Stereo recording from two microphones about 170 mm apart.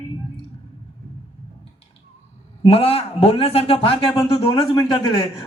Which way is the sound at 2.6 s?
35° left (ahead or behind).